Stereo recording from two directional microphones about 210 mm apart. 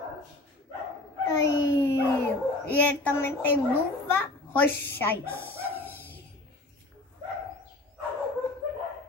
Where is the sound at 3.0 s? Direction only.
10° left (ahead or behind).